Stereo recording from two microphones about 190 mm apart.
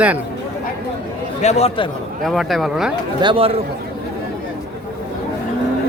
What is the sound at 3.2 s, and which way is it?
Speech, 25° right (ahead or behind).